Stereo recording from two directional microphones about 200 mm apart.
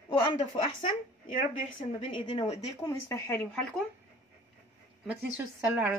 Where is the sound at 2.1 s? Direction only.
25° left (ahead or behind).